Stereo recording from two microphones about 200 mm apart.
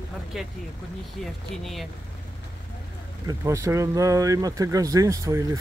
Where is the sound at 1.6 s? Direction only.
Centre (ahead or behind).